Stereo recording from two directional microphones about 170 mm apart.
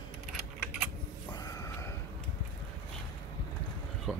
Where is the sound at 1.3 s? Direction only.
20° left (ahead or behind).